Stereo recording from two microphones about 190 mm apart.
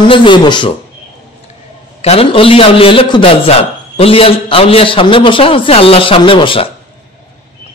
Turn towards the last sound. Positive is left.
turn(degrees=25)  # may be behind; listen again after turning